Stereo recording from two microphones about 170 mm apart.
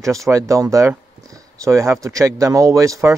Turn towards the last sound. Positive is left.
turn(degrees=-20)  # may be behind; listen again after turning